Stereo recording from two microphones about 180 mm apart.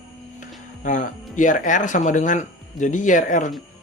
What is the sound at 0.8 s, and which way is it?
Speech, 45° left (ahead or behind).